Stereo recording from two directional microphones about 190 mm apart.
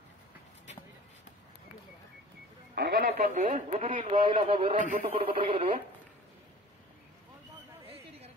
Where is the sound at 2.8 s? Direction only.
55° right (ahead or behind); by 5.8 s 30° right (ahead or behind).